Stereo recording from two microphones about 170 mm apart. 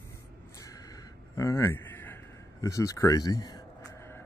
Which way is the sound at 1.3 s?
20° left (ahead or behind).